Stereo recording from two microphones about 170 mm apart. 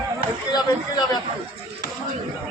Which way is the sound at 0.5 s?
25° left (ahead or behind).